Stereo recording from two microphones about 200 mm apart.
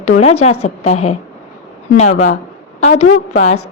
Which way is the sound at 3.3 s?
35° left (ahead or behind).